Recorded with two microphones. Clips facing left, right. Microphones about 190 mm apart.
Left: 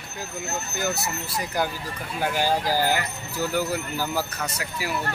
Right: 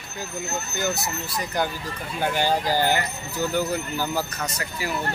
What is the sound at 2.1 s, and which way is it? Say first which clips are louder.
Speech: right 1 dB; 5° left (ahead or behind).